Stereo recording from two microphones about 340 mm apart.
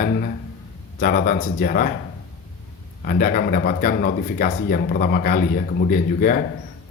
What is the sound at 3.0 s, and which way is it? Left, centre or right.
Speech, left.